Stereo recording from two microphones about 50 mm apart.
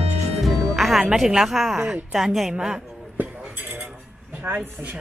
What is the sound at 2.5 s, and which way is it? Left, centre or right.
Speech, centre.